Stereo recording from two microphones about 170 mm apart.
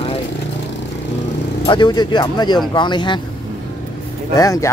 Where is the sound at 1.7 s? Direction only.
25° left (ahead or behind).